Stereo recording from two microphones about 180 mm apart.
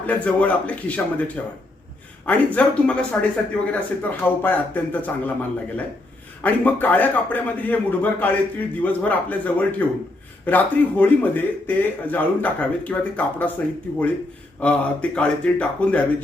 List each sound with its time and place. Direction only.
0.1 s a man's voice: 5° left (ahead or behind)